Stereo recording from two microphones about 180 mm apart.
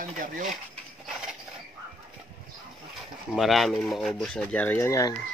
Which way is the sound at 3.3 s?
Centre (ahead or behind).